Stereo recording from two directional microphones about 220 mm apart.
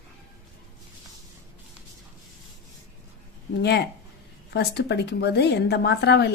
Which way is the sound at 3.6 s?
50° left (ahead or behind).